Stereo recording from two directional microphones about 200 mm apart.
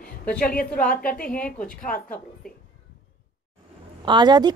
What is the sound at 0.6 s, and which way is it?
Speech, 45° left (ahead or behind).